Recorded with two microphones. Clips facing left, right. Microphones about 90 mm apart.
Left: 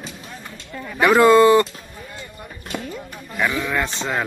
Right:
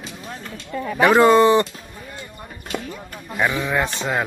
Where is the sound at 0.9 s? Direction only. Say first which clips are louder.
Left 1 dB; 30° right (ahead or behind).